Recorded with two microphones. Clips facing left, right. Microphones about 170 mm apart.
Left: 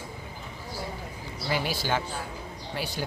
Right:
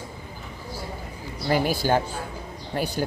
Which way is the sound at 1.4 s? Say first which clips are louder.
Right 7 dB; 45° right (ahead or behind).